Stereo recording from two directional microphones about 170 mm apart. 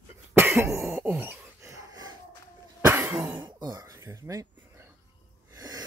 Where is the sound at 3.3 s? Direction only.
25° right (ahead or behind).